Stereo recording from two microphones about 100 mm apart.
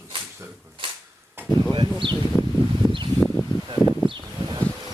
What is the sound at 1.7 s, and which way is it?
Speech, 55° right (ahead or behind).